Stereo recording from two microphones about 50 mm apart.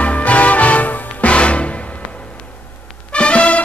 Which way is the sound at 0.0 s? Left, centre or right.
Left.